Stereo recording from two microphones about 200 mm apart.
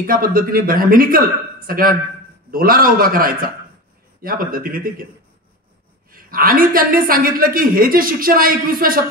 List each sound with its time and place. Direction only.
0.0 s a woman's voice: 45° right (ahead or behind)
6.1 s a woman's voice: 45° right (ahead or behind)